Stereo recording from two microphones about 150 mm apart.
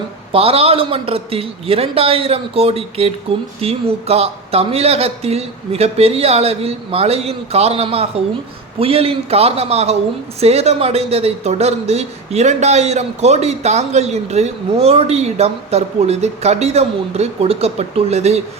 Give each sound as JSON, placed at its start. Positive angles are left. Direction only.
{"t": 0.3, "sound": "a man's voice", "side_deg": -40}